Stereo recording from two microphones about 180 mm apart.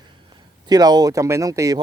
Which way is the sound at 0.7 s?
20° right (ahead or behind).